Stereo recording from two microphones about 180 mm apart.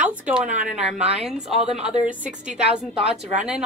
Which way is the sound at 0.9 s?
5° right (ahead or behind).